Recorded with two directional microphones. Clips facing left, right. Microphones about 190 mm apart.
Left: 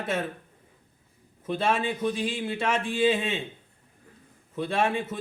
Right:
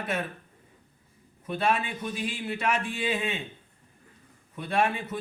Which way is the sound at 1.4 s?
25° left (ahead or behind).